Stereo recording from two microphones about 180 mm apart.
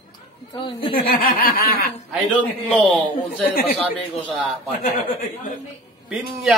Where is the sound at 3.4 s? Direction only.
55° left (ahead or behind).